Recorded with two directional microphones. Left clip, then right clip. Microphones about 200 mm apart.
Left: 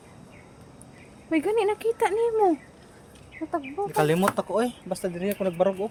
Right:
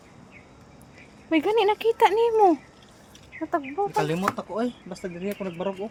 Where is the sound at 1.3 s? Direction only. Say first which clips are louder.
Right 2 dB; 15° right (ahead or behind).